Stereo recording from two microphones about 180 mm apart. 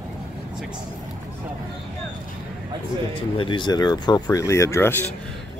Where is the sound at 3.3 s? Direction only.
25° left (ahead or behind).